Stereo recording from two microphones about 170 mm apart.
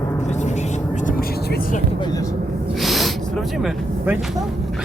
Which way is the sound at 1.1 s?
55° left (ahead or behind).